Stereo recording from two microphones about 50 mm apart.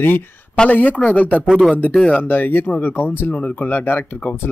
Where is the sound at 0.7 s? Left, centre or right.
Left.